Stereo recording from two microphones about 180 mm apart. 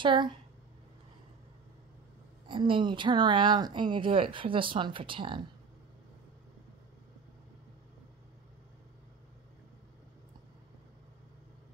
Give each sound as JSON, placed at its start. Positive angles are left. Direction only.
{"t": 0.0, "sound": "a woman's voice", "side_deg": -25}
{"t": 2.4, "sound": "a woman's voice", "side_deg": -30}